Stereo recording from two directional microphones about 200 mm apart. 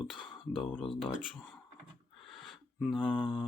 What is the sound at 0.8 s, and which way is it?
Speech, 25° left (ahead or behind).